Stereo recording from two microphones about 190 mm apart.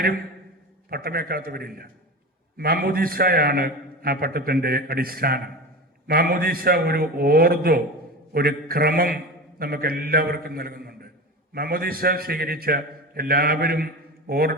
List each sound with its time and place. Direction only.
0.9 s a man's voice: 55° right (ahead or behind)